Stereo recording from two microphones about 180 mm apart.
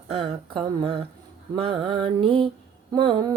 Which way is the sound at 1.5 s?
30° right (ahead or behind).